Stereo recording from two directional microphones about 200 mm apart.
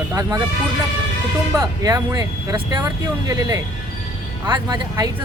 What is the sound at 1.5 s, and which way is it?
Speech, 20° right (ahead or behind).